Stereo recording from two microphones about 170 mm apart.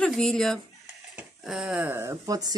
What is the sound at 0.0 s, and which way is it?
Speech, centre (ahead or behind).